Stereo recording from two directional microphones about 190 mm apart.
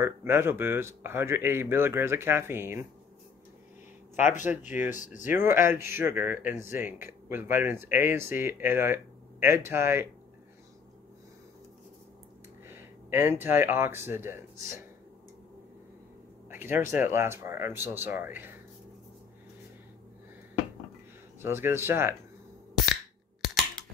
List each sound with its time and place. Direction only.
0.0 s speech: 10° right (ahead or behind)
4.5 s speech: 10° right (ahead or behind)
4.9 s speech: 40° left (ahead or behind)
5.2 s speech: 10° right (ahead or behind)
12.6 s speech: 10° right (ahead or behind)
16.4 s speech: 10° right (ahead or behind)
21.4 s speech: 10° right (ahead or behind)